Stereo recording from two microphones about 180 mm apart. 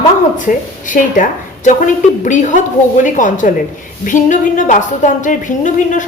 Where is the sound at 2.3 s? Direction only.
45° left (ahead or behind).